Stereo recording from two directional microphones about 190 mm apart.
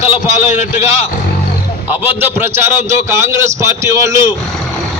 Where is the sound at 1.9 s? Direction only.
10° right (ahead or behind).